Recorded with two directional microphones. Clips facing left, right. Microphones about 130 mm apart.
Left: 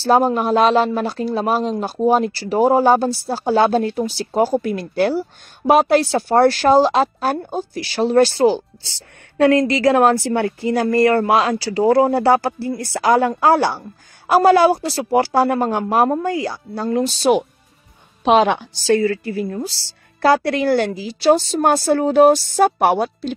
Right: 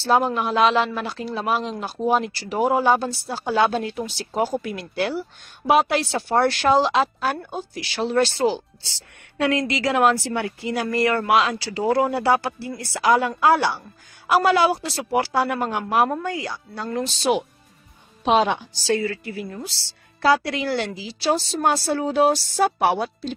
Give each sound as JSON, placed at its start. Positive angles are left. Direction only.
{"t": 0.0, "sound": "speech", "side_deg": 40}
{"t": 9.7, "sound": "a woman's voice", "side_deg": 45}
{"t": 18.2, "sound": "a woman's voice", "side_deg": 70}
{"t": 18.9, "sound": "speech", "side_deg": 45}
{"t": 20.2, "sound": "a woman's voice", "side_deg": 50}